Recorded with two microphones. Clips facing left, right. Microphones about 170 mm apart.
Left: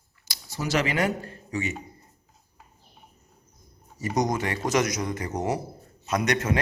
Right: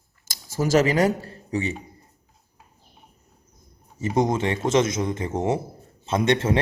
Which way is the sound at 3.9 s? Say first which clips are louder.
Right 4 dB; 25° right (ahead or behind).